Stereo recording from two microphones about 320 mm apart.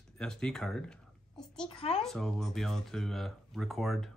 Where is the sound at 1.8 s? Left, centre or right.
Centre.